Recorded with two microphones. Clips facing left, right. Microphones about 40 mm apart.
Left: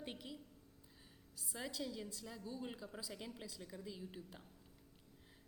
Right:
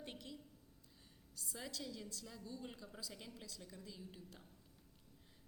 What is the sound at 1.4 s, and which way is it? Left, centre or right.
A woman's voice, centre.